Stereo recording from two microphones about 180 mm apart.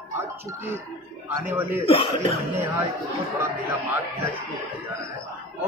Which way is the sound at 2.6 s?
10° right (ahead or behind).